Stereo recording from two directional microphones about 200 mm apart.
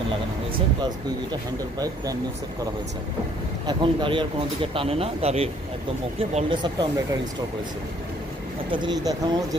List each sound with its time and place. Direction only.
0.7 s speech: 20° right (ahead or behind)
3.6 s speech: 25° right (ahead or behind)
8.6 s speech: 25° right (ahead or behind)